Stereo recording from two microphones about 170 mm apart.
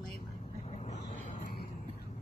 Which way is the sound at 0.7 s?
40° left (ahead or behind).